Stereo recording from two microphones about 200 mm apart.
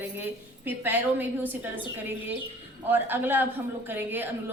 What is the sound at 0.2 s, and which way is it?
A woman's voice, 10° right (ahead or behind).